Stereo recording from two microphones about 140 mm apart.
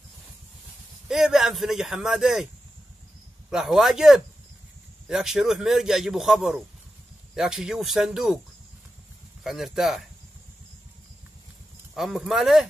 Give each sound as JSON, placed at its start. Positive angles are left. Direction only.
{"t": 1.0, "sound": "a man's voice", "side_deg": -5}
{"t": 3.4, "sound": "a man's voice", "side_deg": 0}
{"t": 9.4, "sound": "a man's voice", "side_deg": 0}
{"t": 11.9, "sound": "a man's voice", "side_deg": 0}